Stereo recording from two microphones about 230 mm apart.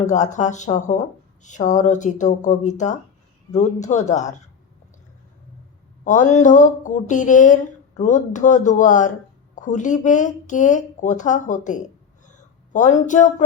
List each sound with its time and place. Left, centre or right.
0.0 s speech: left
6.1 s speech: left
12.2 s a sound: left